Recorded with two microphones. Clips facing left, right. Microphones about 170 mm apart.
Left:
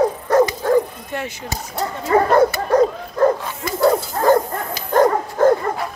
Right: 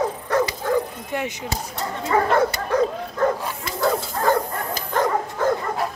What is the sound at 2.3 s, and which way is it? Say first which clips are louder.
Dog: left 5 dB; 40° left (ahead or behind).